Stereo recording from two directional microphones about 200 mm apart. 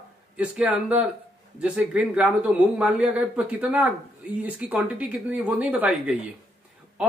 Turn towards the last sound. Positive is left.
turn(degrees=-5)  # may be behind; listen again after turning